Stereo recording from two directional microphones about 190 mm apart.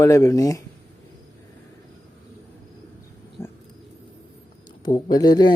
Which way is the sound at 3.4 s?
15° left (ahead or behind).